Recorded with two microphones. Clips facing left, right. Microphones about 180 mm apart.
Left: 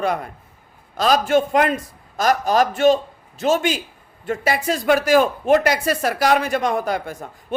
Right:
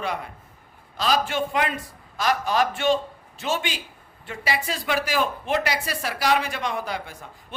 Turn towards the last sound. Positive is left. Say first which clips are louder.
# left 7 dB
turn(degrees=45)  # may be behind; listen again after turning